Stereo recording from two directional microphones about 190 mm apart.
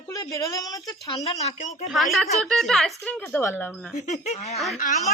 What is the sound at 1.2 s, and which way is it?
Speech, 35° left (ahead or behind).